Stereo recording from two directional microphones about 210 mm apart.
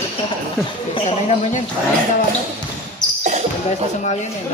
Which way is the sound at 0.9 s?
30° left (ahead or behind).